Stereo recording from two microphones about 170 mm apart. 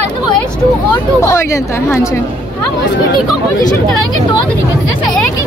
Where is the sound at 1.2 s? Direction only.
15° left (ahead or behind).